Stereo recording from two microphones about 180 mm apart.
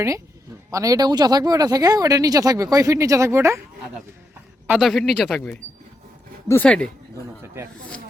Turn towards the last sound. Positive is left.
turn(degrees=-15)  # may be behind; listen again after turning